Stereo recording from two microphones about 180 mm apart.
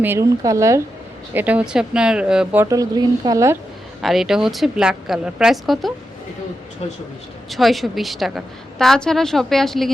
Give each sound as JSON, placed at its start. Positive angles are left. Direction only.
{"t": 0.0, "sound": "speech", "side_deg": -15}
{"t": 4.0, "sound": "a woman's voice", "side_deg": 0}
{"t": 7.5, "sound": "a woman's voice", "side_deg": 0}